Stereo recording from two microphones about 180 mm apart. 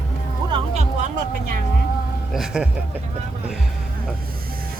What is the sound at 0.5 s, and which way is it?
Music, 40° right (ahead or behind).